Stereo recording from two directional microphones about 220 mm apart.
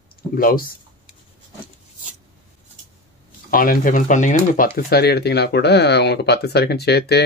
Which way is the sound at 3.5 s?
40° left (ahead or behind).